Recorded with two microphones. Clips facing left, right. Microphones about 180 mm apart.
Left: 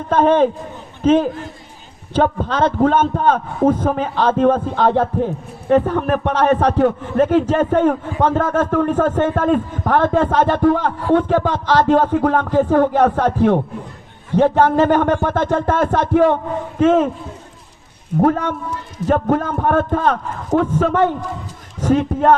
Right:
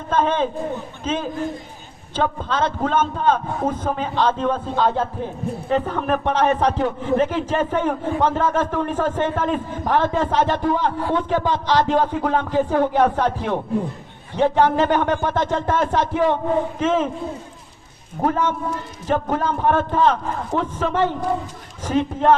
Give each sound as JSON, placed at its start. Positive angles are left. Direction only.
{"t": 0.1, "sound": "a man's voice", "side_deg": 60}
{"t": 2.4, "sound": "a man's voice", "side_deg": 60}
{"t": 5.6, "sound": "a man's voice", "side_deg": 45}
{"t": 16.8, "sound": "a man's voice", "side_deg": 65}
{"t": 18.2, "sound": "a man's voice", "side_deg": 60}